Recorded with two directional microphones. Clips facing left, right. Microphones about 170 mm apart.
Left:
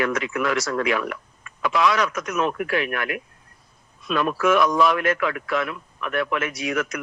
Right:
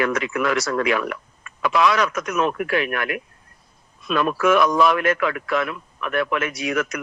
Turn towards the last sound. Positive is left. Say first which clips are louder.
# right 2 dB
turn(degrees=-70)  # may be behind; listen again after turning